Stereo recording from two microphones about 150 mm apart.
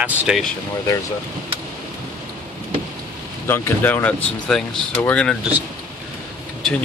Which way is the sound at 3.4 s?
15° left (ahead or behind).